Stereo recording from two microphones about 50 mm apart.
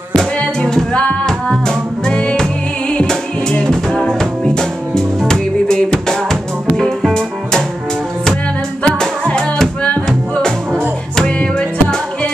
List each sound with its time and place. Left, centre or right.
0.9 s music: centre
3.6 s music: centre
8.8 s music: centre